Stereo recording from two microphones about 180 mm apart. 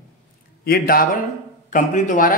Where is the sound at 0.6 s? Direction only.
55° left (ahead or behind).